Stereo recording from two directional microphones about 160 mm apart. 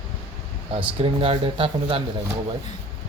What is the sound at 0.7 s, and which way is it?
Speech, 35° right (ahead or behind).